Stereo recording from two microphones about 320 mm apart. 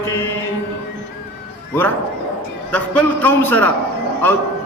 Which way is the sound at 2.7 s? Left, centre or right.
Centre.